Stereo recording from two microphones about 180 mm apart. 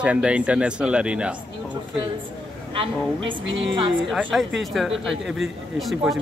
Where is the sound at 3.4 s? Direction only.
90° right.